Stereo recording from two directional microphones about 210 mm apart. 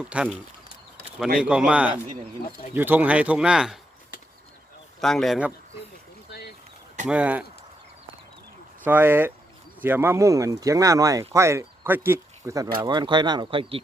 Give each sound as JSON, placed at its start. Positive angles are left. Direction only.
{"t": 0.0, "sound": "speech", "side_deg": -5}
{"t": 1.4, "sound": "speech", "side_deg": -5}
{"t": 4.9, "sound": "speech", "side_deg": 0}
{"t": 7.1, "sound": "speech", "side_deg": -5}
{"t": 8.8, "sound": "speech", "side_deg": -10}